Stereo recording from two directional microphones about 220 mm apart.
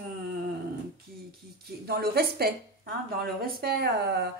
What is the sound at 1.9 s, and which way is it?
Speech, 45° right (ahead or behind).